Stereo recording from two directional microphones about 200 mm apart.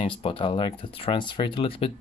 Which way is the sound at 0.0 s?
25° left (ahead or behind).